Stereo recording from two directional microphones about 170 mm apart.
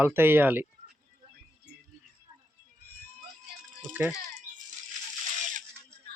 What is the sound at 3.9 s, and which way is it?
Music, 10° right (ahead or behind).